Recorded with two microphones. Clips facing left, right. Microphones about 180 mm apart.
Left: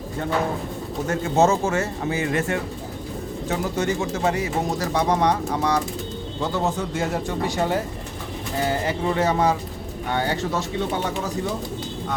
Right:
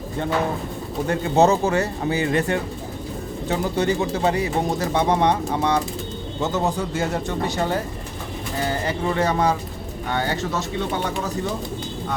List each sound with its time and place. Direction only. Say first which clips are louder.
1.0 s speech: right 2 dB; 35° right (ahead or behind); by 6.8 s 15° right (ahead or behind)
6.9 s speech: right 1 dB; centre (ahead or behind)
7.4 s speech: left 2 dB; 15° left (ahead or behind)